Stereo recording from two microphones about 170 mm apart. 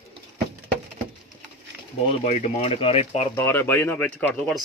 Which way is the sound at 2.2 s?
40° left (ahead or behind).